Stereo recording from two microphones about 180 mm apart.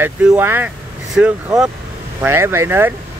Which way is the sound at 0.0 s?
10° right (ahead or behind).